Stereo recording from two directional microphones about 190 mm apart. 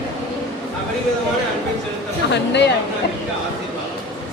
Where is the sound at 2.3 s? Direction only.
65° left (ahead or behind).